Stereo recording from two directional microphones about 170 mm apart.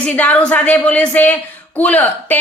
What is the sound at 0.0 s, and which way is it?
Speech, 10° left (ahead or behind).